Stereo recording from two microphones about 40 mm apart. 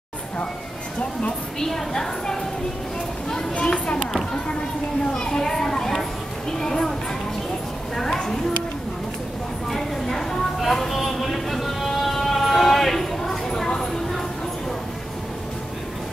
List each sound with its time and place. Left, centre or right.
1.6 s a woman's voice: centre
3.5 s a child's voice: left
4.0 s a child's voice: centre
5.1 s children playing: centre
6.6 s a sound: centre
9.7 s a sound: centre